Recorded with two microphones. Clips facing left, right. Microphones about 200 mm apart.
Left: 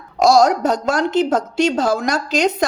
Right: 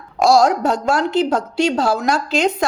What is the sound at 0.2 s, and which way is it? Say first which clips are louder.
A woman's voice: left 1 dB; 40° left (ahead or behind).